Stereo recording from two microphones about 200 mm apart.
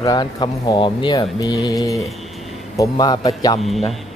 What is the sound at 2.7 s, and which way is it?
Speech, 20° left (ahead or behind).